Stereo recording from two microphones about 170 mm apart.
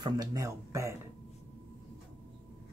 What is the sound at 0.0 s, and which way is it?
Speech, 20° right (ahead or behind).